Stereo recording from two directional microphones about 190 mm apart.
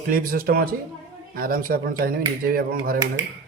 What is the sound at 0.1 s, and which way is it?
Speech, 50° right (ahead or behind).